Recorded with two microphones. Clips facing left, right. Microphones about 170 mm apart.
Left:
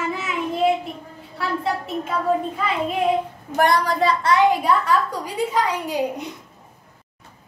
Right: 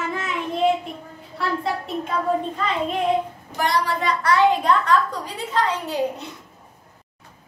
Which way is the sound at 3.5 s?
50° left (ahead or behind).